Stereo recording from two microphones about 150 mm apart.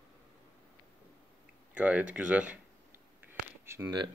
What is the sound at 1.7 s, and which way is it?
Speech, 10° right (ahead or behind).